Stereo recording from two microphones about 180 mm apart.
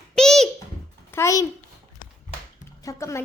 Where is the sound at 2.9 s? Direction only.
15° left (ahead or behind).